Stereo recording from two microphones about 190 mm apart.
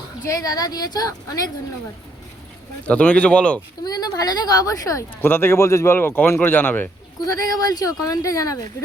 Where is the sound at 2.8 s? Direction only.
5° left (ahead or behind).